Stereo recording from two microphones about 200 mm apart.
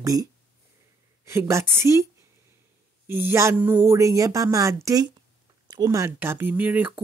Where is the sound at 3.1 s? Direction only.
10° right (ahead or behind).